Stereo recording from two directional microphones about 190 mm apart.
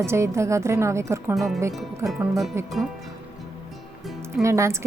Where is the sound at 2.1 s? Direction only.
Centre (ahead or behind).